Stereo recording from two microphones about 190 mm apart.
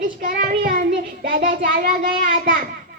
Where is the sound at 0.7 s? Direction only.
55° right (ahead or behind).